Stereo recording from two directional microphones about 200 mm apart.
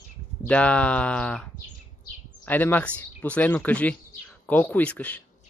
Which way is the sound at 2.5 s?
10° left (ahead or behind).